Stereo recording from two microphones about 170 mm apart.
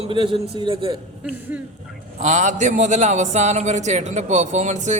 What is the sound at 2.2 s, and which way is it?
A man's voice, 45° right (ahead or behind).